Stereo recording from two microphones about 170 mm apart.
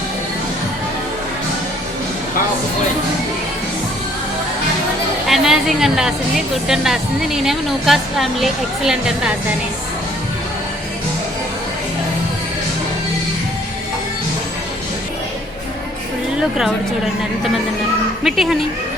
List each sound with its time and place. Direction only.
5.3 s a woman's voice: centre (ahead or behind)
16.4 s a woman's voice: 5° right (ahead or behind)
18.2 s speech: centre (ahead or behind)